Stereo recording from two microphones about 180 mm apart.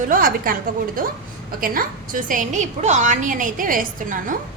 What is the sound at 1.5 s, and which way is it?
A woman's voice, 50° right (ahead or behind).